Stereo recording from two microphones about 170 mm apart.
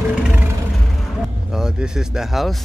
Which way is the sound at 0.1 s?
5° right (ahead or behind).